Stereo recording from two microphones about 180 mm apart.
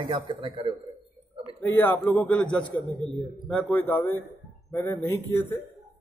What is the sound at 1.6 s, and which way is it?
A man's voice, 10° left (ahead or behind).